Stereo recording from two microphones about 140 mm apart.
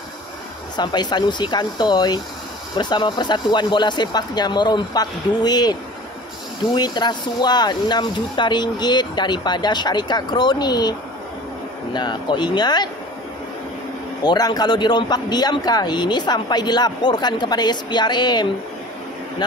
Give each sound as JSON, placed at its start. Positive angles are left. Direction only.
{"t": 0.7, "sound": "speech", "side_deg": 30}
{"t": 14.2, "sound": "speech", "side_deg": 30}